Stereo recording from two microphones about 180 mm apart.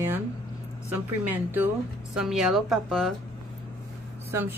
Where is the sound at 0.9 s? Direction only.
10° right (ahead or behind).